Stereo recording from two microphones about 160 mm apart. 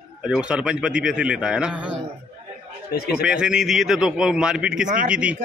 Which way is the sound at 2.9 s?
80° left.